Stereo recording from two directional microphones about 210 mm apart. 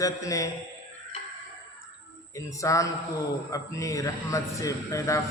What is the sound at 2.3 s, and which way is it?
A man's voice, 15° left (ahead or behind).